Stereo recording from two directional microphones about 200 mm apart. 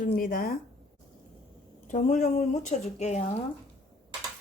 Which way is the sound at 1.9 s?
35° left (ahead or behind).